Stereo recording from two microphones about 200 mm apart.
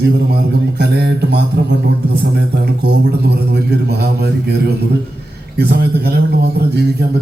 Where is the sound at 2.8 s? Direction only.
55° right (ahead or behind).